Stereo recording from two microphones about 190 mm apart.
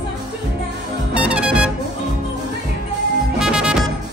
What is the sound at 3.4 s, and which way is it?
Music, 5° right (ahead or behind).